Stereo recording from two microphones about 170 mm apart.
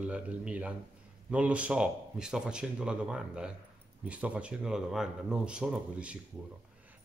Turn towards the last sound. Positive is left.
turn(degrees=-5)  # may be behind; listen again after turning